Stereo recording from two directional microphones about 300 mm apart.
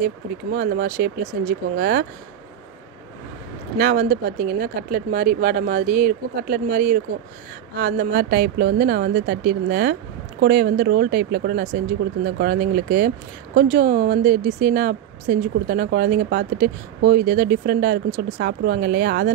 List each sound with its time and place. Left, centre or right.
0.0 s a woman's voice: right
3.7 s a woman's voice: right